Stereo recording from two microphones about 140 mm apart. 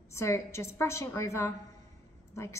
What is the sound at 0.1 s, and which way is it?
A woman's voice, 20° left (ahead or behind).